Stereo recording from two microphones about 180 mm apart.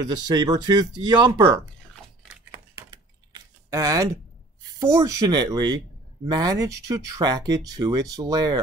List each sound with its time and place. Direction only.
0.0 s speech: 20° right (ahead or behind)
2.5 s typing: 20° right (ahead or behind)
4.7 s speech: 20° right (ahead or behind)